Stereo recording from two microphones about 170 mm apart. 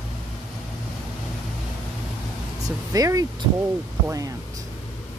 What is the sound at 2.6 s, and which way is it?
Speech, 20° right (ahead or behind).